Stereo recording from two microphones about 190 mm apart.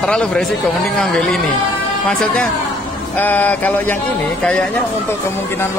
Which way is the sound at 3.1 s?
10° left (ahead or behind).